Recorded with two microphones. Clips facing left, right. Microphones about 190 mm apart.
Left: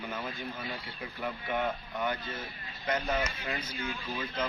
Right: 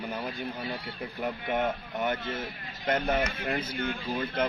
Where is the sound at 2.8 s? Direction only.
55° right (ahead or behind).